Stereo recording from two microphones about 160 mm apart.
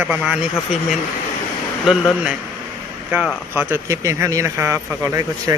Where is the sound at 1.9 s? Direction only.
5° right (ahead or behind); by 5.5 s 20° right (ahead or behind).